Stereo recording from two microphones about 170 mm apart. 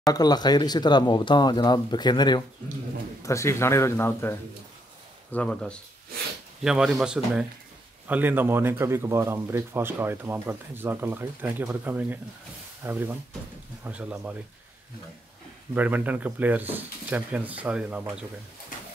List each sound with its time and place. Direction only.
0.1 s a man's voice: 25° left (ahead or behind); by 14.3 s 10° right (ahead or behind)
15.7 s speech: 10° right (ahead or behind)